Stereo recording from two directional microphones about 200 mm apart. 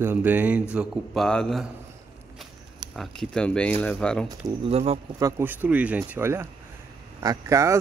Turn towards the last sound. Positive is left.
turn(degrees=-15)  # may be behind; listen again after turning